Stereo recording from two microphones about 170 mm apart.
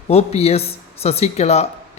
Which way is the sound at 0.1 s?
40° left (ahead or behind).